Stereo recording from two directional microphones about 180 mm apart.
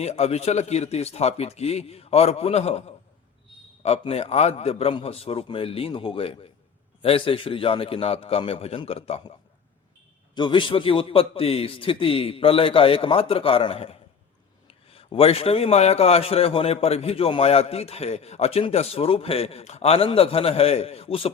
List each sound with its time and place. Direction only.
0.0 s a man's voice: 35° left (ahead or behind)
10.3 s a man's voice: 25° left (ahead or behind)